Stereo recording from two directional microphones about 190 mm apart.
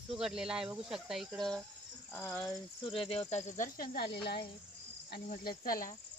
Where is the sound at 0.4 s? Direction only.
5° right (ahead or behind).